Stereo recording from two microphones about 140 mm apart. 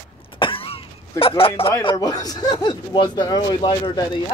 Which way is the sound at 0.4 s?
40° left (ahead or behind).